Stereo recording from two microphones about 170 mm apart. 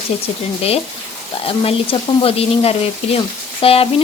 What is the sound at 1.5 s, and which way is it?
Speech, 35° left (ahead or behind).